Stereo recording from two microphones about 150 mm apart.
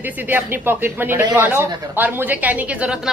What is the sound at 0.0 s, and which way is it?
A child's voice, 15° right (ahead or behind).